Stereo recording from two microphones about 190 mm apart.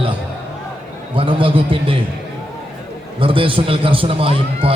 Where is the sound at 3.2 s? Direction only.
30° right (ahead or behind).